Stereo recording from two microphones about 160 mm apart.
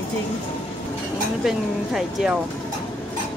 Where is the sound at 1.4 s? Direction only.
5° right (ahead or behind).